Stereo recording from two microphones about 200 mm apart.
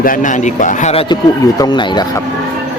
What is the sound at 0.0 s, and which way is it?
A man's voice, 40° left (ahead or behind).